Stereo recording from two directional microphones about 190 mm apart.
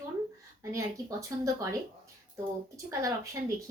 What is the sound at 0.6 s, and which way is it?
Speech, 15° right (ahead or behind).